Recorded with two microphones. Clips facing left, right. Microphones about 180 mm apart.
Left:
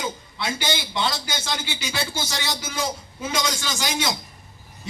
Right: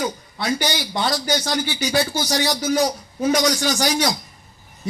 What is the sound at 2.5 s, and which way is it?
A man's voice, 25° left (ahead or behind).